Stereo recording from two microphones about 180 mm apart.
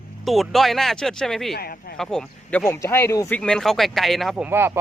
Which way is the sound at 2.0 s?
5° left (ahead or behind).